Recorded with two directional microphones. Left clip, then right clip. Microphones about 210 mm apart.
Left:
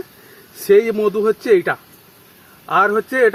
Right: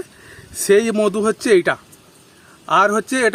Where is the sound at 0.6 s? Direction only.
40° right (ahead or behind).